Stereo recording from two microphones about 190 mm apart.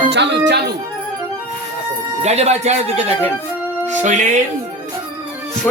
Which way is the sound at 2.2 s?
35° right (ahead or behind).